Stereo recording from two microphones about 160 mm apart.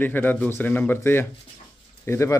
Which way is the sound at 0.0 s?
10° left (ahead or behind).